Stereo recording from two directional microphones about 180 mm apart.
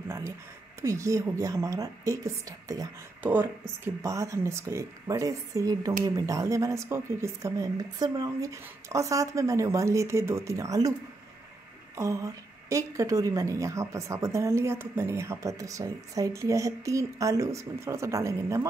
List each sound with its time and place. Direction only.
0.8 s a woman's voice: 15° right (ahead or behind)
12.0 s a woman's voice: 15° right (ahead or behind)